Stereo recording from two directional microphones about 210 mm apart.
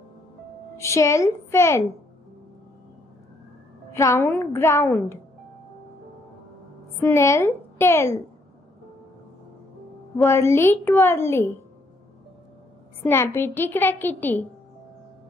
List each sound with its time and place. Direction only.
0.7 s speech: 15° left (ahead or behind)
3.9 s speech: 15° left (ahead or behind)
7.0 s speech: 10° left (ahead or behind)
10.1 s speech: 15° left (ahead or behind)
13.0 s speech: 10° left (ahead or behind)